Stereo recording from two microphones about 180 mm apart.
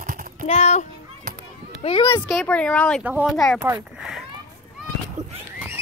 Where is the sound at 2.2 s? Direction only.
5° left (ahead or behind).